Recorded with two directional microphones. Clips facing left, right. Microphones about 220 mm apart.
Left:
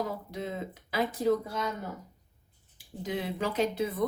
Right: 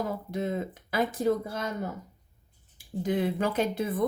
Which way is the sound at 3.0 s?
50° right (ahead or behind).